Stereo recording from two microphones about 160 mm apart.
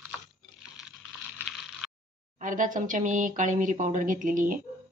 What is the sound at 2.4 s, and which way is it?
Speech, 55° right (ahead or behind).